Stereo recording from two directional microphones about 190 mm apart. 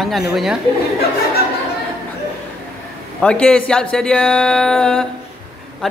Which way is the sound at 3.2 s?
5° left (ahead or behind).